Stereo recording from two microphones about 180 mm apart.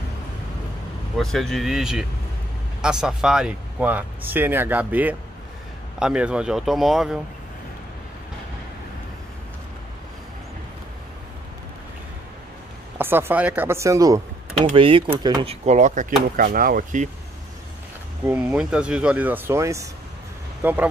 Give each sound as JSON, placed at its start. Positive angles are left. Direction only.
{"t": 1.1, "sound": "a man's voice", "side_deg": 0}
{"t": 12.9, "sound": "speech", "side_deg": -10}
{"t": 15.6, "sound": "speech", "side_deg": -40}
{"t": 18.2, "sound": "speech", "side_deg": -10}